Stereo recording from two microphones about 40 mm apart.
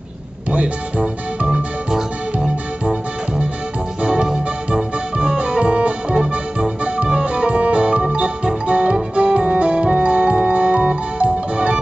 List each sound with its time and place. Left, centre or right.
0.5 s music: right